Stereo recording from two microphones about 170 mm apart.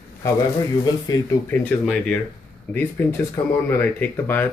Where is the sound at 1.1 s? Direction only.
20° left (ahead or behind).